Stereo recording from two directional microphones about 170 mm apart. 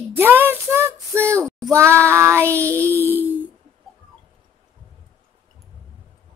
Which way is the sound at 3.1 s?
10° right (ahead or behind).